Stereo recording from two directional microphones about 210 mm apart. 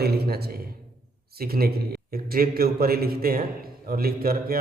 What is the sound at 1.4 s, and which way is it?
A man's voice, 45° right (ahead or behind).